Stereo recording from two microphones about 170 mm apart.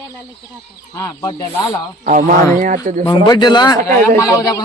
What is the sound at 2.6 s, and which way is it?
Speech, 50° right (ahead or behind).